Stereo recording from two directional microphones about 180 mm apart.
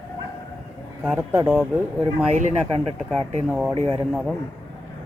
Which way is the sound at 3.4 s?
10° right (ahead or behind).